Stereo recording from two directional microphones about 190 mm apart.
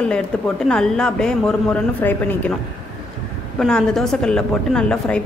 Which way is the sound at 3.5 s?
5° left (ahead or behind).